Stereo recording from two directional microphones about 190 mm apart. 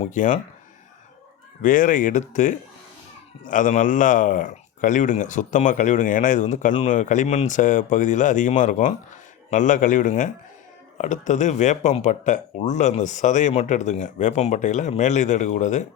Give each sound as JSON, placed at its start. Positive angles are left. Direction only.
{"t": 0.0, "sound": "speech", "side_deg": 40}
{"t": 1.6, "sound": "speech", "side_deg": 45}